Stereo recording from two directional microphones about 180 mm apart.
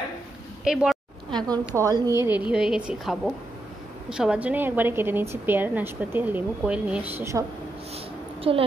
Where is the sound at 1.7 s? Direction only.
20° right (ahead or behind).